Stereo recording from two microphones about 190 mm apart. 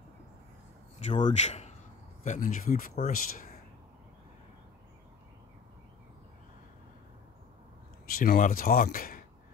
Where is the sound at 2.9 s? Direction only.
35° left (ahead or behind).